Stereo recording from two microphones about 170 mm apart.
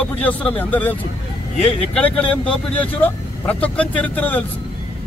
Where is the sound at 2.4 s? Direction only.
10° left (ahead or behind).